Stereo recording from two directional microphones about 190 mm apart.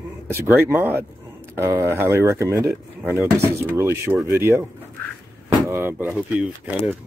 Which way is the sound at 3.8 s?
15° right (ahead or behind).